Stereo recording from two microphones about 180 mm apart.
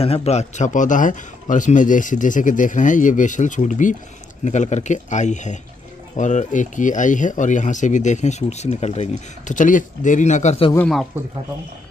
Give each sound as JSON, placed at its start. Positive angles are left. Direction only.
{"t": 0.0, "sound": "speech", "side_deg": 35}